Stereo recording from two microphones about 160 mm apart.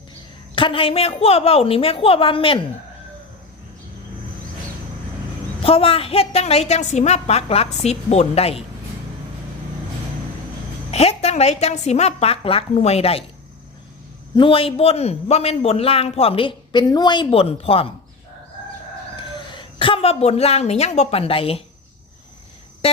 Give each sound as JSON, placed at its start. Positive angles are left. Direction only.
{"t": 0.5, "sound": "a man's voice", "side_deg": 35}
{"t": 5.6, "sound": "a man's voice", "side_deg": 35}
{"t": 10.9, "sound": "a man's voice", "side_deg": 40}
{"t": 14.3, "sound": "a man's voice", "side_deg": 35}
{"t": 19.1, "sound": "a woman's voice", "side_deg": 30}